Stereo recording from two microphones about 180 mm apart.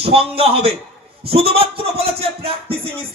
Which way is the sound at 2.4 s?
30° right (ahead or behind).